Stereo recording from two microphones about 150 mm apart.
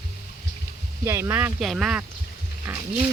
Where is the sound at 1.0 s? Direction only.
15° right (ahead or behind).